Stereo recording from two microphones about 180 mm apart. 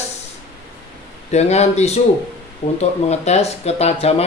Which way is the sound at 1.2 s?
40° left (ahead or behind).